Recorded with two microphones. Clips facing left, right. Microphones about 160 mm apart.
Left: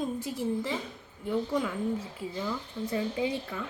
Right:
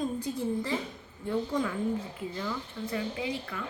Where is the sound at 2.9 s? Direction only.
30° left (ahead or behind).